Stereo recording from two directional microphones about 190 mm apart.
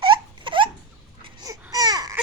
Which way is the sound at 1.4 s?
20° right (ahead or behind).